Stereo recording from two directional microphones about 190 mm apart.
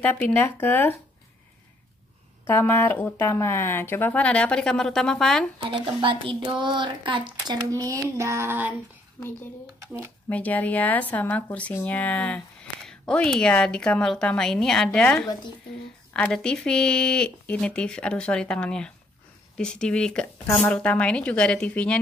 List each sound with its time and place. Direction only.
0.0 s speech: 10° left (ahead or behind)
2.4 s speech: 10° left (ahead or behind)
5.6 s speech: 25° right (ahead or behind)
10.3 s speech: 10° left (ahead or behind)